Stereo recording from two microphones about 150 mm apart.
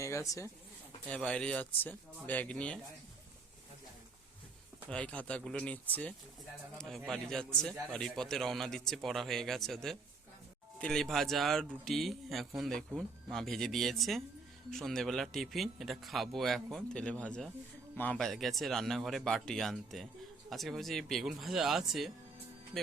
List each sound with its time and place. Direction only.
0.0 s speech: 20° left (ahead or behind)
1.1 s speech: 5° left (ahead or behind)
4.9 s a man's voice: 10° left (ahead or behind)